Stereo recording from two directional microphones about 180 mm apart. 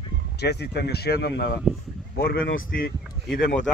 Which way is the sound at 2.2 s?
55° left (ahead or behind).